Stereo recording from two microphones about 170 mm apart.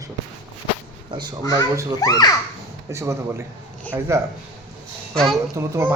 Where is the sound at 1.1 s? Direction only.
25° right (ahead or behind).